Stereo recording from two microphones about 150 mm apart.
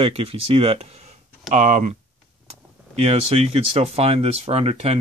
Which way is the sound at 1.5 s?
50° right (ahead or behind).